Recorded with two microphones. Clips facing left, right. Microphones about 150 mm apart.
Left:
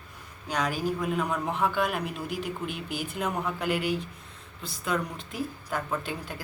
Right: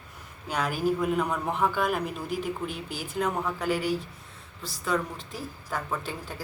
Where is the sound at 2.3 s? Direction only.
45° right (ahead or behind).